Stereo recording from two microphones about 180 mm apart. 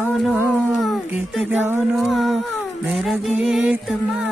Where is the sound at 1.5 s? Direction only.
10° right (ahead or behind).